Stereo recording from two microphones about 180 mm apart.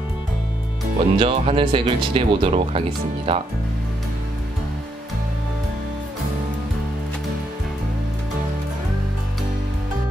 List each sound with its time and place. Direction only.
0.9 s speech: 30° right (ahead or behind)